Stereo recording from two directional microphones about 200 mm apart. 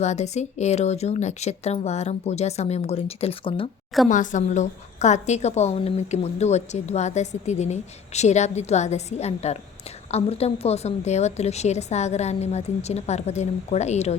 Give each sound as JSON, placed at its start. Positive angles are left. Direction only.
{"t": 0.0, "sound": "a woman's voice", "side_deg": 35}
{"t": 4.1, "sound": "a woman's voice", "side_deg": 40}